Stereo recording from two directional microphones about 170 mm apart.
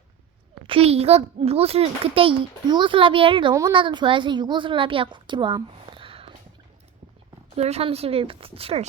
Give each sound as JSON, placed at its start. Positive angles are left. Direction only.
{"t": 0.7, "sound": "a child's voice", "side_deg": -35}
{"t": 7.5, "sound": "a child's voice", "side_deg": -35}